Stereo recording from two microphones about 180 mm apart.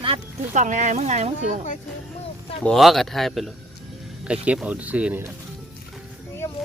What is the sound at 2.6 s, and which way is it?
Speech, centre (ahead or behind).